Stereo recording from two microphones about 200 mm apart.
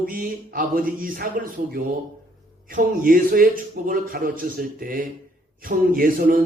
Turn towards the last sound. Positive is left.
turn(degrees=-45)  # may be behind; listen again after turning